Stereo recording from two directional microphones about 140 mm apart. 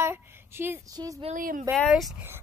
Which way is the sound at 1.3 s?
75° right (ahead or behind).